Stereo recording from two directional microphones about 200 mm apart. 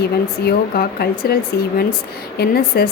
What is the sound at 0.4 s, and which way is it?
A woman's voice, 50° left (ahead or behind).